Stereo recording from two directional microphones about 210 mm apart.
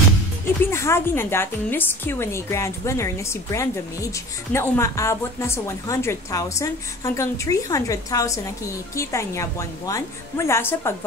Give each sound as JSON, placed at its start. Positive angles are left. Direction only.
{"t": 0.7, "sound": "a woman's voice", "side_deg": 10}